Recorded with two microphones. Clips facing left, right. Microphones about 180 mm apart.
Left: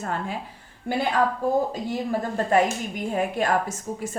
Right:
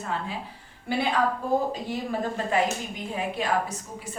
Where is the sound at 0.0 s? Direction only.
45° left (ahead or behind).